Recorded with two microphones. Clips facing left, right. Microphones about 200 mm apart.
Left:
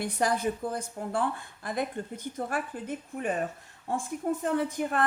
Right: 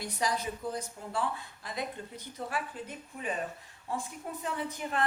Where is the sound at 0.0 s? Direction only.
55° left (ahead or behind).